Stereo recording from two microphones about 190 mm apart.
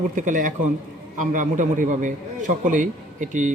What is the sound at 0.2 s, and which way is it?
A man's voice, 45° right (ahead or behind).